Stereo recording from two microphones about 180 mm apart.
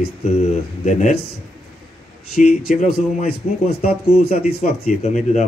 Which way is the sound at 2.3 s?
45° left (ahead or behind).